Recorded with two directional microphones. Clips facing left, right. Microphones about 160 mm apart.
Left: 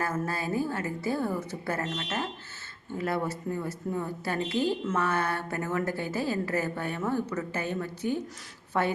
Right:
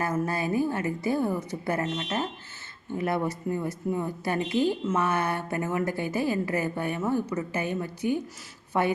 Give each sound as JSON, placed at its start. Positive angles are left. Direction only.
{"t": 0.0, "sound": "speech", "side_deg": -15}